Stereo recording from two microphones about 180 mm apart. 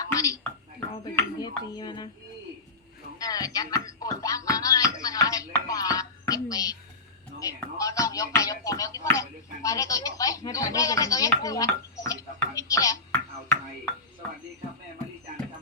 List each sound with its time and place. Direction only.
0.0 s a sound: 20° left (ahead or behind)
3.2 s speech: 20° left (ahead or behind)
3.8 s music: 20° left (ahead or behind)
12.5 s speech: 20° left (ahead or behind)